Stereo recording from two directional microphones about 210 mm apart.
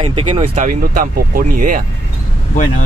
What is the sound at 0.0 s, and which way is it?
Speech, 25° right (ahead or behind).